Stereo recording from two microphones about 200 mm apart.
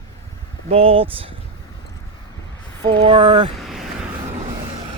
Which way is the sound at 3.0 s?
25° right (ahead or behind).